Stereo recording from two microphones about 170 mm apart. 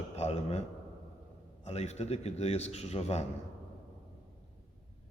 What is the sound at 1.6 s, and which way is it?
A man's voice, 40° left (ahead or behind).